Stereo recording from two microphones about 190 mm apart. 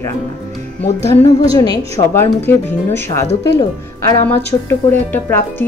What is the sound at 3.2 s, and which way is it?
Speech, 25° left (ahead or behind).